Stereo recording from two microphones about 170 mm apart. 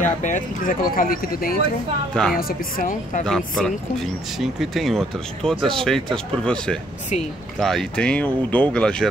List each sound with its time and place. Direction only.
0.0 s a woman's voice: 50° left (ahead or behind)
3.3 s speech: 5° left (ahead or behind)